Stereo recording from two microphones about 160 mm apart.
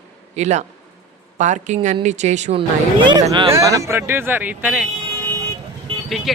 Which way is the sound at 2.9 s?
30° right (ahead or behind).